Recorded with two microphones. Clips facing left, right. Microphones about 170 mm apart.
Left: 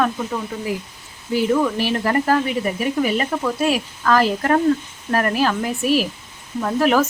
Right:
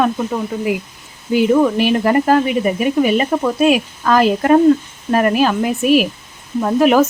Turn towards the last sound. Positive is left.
turn(degrees=-20)  # may be behind; listen again after turning